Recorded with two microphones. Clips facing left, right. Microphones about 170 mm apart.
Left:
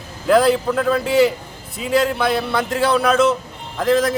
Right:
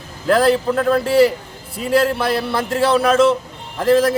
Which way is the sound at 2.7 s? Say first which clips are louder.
Right 3 dB; 30° right (ahead or behind).